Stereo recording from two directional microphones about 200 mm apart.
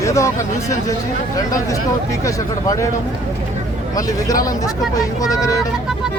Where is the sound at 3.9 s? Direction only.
15° left (ahead or behind).